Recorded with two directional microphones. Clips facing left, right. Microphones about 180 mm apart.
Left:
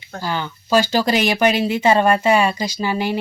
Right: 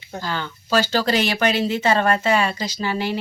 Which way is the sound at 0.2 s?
15° left (ahead or behind).